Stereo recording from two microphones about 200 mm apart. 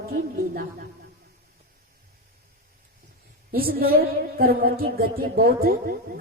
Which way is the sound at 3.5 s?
50° right (ahead or behind).